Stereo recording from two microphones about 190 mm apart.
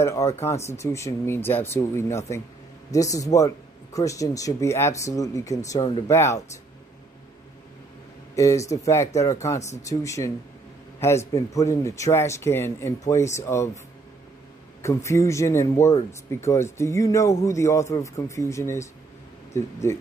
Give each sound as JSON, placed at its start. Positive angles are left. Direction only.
{"t": 0.0, "sound": "speech", "side_deg": 15}
{"t": 8.4, "sound": "speech", "side_deg": 15}
{"t": 14.8, "sound": "speech", "side_deg": 15}